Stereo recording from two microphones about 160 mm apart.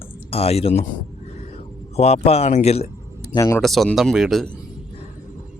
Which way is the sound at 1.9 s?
40° left (ahead or behind).